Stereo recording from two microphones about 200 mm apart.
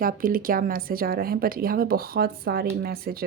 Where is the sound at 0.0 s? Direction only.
45° right (ahead or behind).